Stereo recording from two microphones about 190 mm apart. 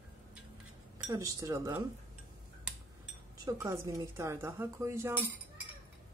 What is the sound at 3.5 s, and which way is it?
Speech, 15° right (ahead or behind).